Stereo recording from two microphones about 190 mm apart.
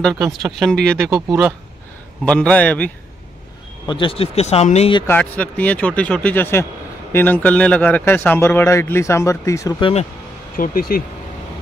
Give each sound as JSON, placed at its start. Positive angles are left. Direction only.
{"t": 0.5, "sound": "speech", "side_deg": 0}
{"t": 1.0, "sound": "speech", "side_deg": -10}
{"t": 2.2, "sound": "speech", "side_deg": 5}
{"t": 3.8, "sound": "speech", "side_deg": 25}
{"t": 5.0, "sound": "speech", "side_deg": 10}
{"t": 10.5, "sound": "speech", "side_deg": 50}